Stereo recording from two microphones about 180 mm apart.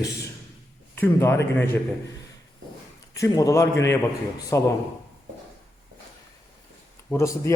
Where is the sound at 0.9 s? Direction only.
15° left (ahead or behind).